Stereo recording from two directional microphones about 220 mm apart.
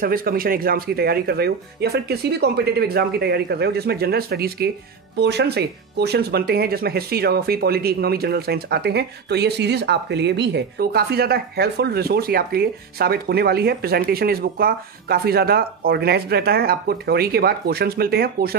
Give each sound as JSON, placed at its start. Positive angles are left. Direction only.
{"t": 0.0, "sound": "speech", "side_deg": -40}